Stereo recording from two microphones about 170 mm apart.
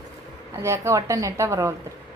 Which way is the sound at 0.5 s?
15° right (ahead or behind).